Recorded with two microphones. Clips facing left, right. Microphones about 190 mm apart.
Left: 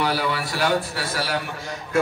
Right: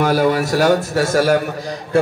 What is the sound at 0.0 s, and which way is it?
A man's voice, 45° right (ahead or behind).